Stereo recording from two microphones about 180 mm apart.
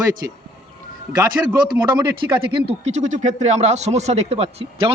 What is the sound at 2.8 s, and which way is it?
Speech, 40° right (ahead or behind).